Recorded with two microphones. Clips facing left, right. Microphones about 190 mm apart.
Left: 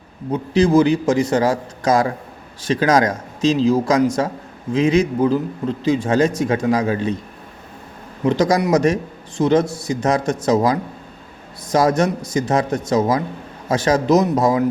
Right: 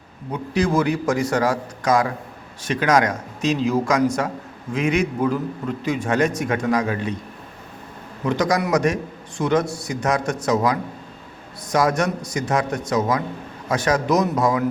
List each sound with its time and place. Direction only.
0.3 s a man's voice: 25° left (ahead or behind)
8.2 s a man's voice: 30° left (ahead or behind)